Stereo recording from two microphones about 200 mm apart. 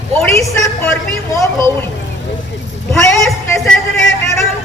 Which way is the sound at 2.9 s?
Centre (ahead or behind).